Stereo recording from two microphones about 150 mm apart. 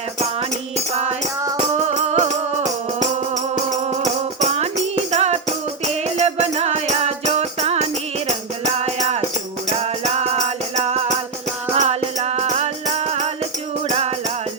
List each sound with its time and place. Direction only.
1.7 s music: 50° right (ahead or behind)